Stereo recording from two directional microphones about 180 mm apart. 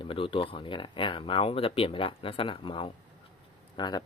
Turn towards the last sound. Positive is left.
turn(degrees=25)  # may be behind; listen again after turning